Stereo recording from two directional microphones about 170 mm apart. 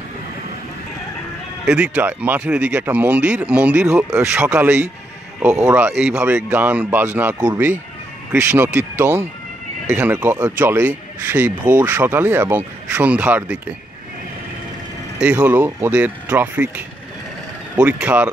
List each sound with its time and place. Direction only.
1.7 s speech: 10° right (ahead or behind)
15.1 s speech: 10° right (ahead or behind)